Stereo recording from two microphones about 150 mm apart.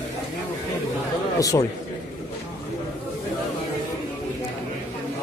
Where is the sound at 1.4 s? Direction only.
25° left (ahead or behind).